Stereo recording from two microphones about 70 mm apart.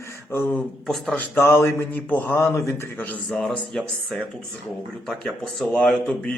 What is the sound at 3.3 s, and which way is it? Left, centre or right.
Speech, centre.